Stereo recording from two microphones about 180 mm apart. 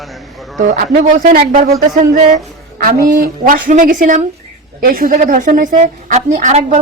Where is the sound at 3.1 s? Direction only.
50° right (ahead or behind).